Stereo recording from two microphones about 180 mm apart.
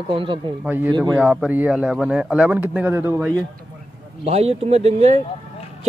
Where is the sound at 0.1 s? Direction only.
30° right (ahead or behind).